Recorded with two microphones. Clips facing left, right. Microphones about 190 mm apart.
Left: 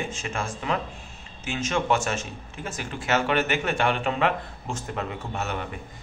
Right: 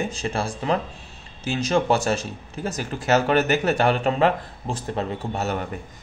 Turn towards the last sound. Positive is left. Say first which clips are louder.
# right 5 dB
turn(degrees=-35)  # may be behind; listen again after turning